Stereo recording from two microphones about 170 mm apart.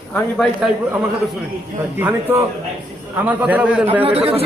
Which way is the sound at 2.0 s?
10° right (ahead or behind).